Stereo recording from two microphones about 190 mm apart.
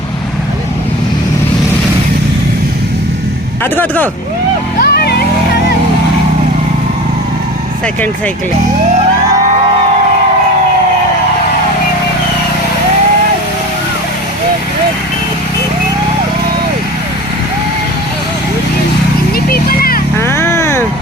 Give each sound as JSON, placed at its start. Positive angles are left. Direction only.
{"t": 3.6, "sound": "speech", "side_deg": 10}
{"t": 4.8, "sound": "vehicle", "side_deg": 55}
{"t": 19.5, "sound": "a sound", "side_deg": 50}
{"t": 20.1, "sound": "vehicle", "side_deg": 15}